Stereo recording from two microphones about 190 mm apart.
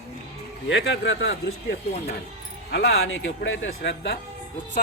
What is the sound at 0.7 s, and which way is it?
Speech, 80° left.